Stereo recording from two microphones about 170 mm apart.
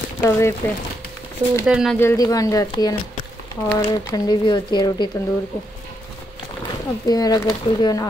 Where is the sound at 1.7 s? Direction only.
5° right (ahead or behind).